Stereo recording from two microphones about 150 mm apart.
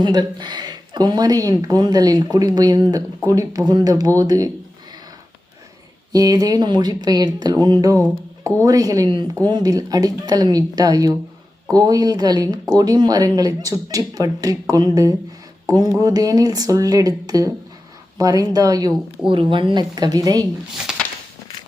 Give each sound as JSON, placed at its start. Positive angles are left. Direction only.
{"t": 0.0, "sound": "speech", "side_deg": -30}
{"t": 6.1, "sound": "speech", "side_deg": -25}
{"t": 20.9, "sound": "a sound", "side_deg": -5}